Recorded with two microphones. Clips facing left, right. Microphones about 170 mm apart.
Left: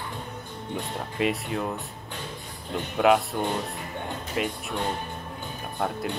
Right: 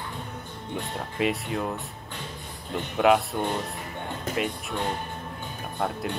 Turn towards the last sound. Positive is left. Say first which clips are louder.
# even
turn(degrees=0)  # may be behind; listen again after turning